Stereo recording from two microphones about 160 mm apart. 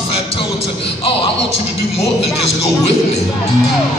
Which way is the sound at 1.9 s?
Centre (ahead or behind).